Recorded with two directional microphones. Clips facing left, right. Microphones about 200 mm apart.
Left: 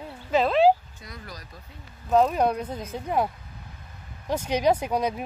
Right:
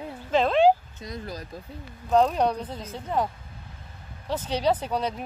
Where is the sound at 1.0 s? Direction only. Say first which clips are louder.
Right 7 dB; 25° right (ahead or behind).